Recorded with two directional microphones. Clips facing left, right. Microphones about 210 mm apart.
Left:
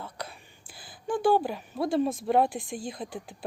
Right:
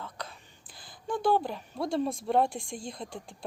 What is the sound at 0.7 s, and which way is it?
Speech, 5° left (ahead or behind).